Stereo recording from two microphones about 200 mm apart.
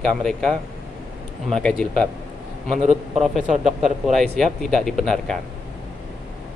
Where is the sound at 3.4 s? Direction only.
35° right (ahead or behind).